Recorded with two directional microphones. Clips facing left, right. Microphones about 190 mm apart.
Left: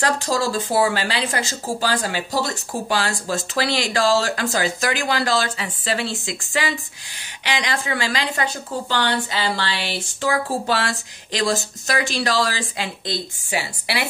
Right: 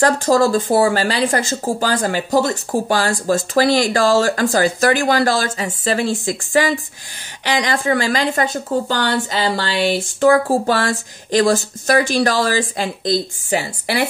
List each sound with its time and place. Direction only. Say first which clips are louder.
0.0 s speech: right 7 dB; 50° right (ahead or behind)